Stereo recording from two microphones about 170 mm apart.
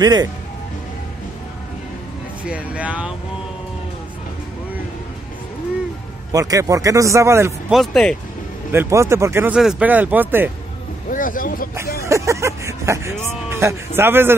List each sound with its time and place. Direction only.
0.0 s speech: 25° right (ahead or behind)
2.4 s speech: 5° right (ahead or behind)
6.3 s speech: 20° right (ahead or behind)
7.7 s speech: centre (ahead or behind)
8.7 s speech: 15° right (ahead or behind)
11.1 s speech: 55° left (ahead or behind)
12.0 s speech: 15° right (ahead or behind)